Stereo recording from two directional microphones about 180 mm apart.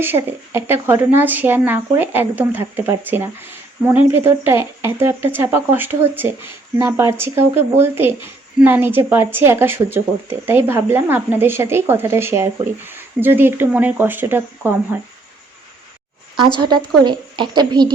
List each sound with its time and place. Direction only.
0.0 s a woman's voice: 10° right (ahead or behind)
16.6 s a woman's voice: 25° right (ahead or behind)